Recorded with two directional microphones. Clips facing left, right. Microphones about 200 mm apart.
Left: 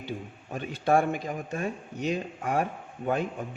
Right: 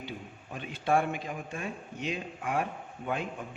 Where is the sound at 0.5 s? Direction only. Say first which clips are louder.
Left 4 dB; 45° left (ahead or behind).